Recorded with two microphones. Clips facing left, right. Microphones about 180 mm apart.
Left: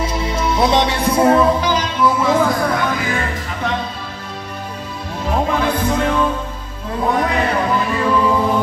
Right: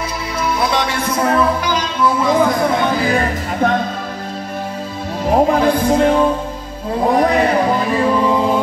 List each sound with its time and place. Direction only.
0.4 s music: 25° left (ahead or behind)
1.6 s speech: 15° right (ahead or behind); by 3.8 s 45° right (ahead or behind)
5.3 s music: 35° right (ahead or behind)